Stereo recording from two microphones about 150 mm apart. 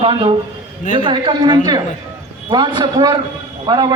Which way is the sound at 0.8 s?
55° left (ahead or behind).